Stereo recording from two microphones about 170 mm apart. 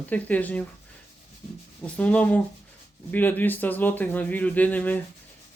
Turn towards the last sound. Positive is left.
turn(degrees=10)  # may be behind; listen again after turning